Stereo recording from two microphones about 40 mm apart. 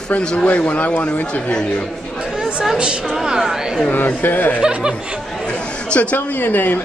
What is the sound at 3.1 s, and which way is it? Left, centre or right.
Speech, centre.